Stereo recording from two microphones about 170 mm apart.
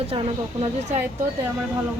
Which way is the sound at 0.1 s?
35° right (ahead or behind).